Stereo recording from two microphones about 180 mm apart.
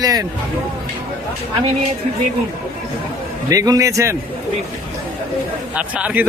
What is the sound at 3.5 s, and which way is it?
Speech, 20° right (ahead or behind).